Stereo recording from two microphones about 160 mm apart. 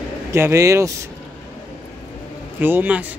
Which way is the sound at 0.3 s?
15° right (ahead or behind).